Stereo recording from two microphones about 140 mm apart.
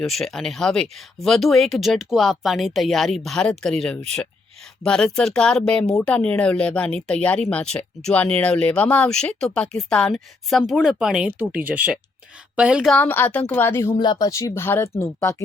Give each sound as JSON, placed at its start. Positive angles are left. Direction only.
{"t": 0.0, "sound": "speech", "side_deg": 0}
{"t": 12.9, "sound": "speech", "side_deg": 15}
{"t": 13.9, "sound": "speech", "side_deg": 30}